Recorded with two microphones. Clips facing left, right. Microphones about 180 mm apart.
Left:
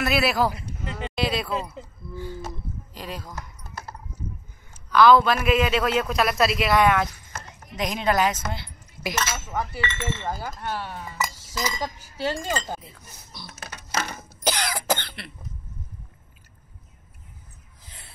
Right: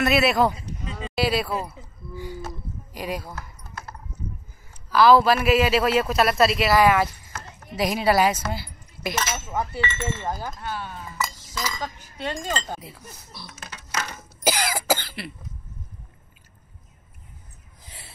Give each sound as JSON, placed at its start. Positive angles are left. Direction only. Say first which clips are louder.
{"t": 0.0, "sound": "speech", "louder": "right 3 dB", "side_deg": 0}
{"t": 0.6, "sound": "sheep", "louder": "left 1 dB", "side_deg": 70}
{"t": 1.1, "sound": "speech", "louder": "right 3 dB", "side_deg": -5}
{"t": 4.9, "sound": "speech", "louder": "even", "side_deg": -5}
{"t": 9.1, "sound": "speech", "louder": "even", "side_deg": -20}
{"t": 9.6, "sound": "speech", "louder": "right 2 dB", "side_deg": -5}
{"t": 11.4, "sound": "speech", "louder": "left 2 dB", "side_deg": 20}
{"t": 14.4, "sound": "cough", "louder": "right 2 dB", "side_deg": -5}